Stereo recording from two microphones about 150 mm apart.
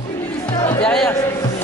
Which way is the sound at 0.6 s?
10° left (ahead or behind).